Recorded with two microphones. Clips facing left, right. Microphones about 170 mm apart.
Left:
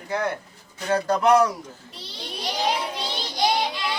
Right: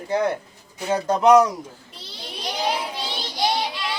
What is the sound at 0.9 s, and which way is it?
Speech, 20° right (ahead or behind).